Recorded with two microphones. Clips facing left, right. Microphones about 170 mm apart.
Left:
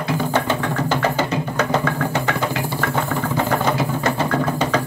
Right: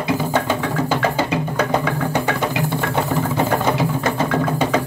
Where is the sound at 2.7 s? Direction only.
20° right (ahead or behind).